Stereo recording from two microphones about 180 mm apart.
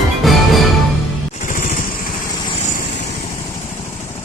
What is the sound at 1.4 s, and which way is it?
Vehicle, 45° left (ahead or behind).